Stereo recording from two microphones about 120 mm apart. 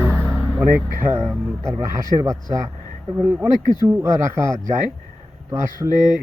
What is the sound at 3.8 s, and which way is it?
Speech, 25° right (ahead or behind).